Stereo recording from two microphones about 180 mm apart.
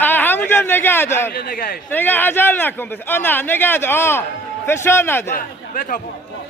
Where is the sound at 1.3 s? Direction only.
50° left (ahead or behind).